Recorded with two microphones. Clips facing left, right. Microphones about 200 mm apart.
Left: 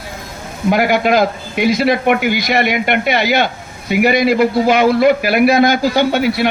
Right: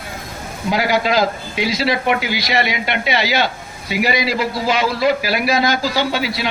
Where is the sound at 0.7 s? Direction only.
55° left (ahead or behind).